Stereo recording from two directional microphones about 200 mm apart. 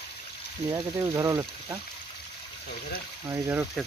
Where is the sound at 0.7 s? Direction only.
15° right (ahead or behind).